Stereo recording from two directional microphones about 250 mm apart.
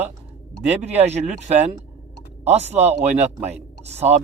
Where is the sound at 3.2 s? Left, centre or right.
Centre.